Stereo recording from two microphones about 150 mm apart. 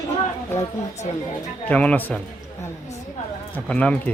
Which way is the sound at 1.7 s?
10° left (ahead or behind).